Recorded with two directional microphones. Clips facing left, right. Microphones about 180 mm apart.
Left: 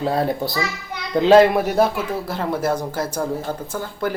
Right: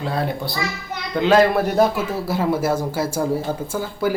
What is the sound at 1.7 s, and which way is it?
Speech, centre (ahead or behind).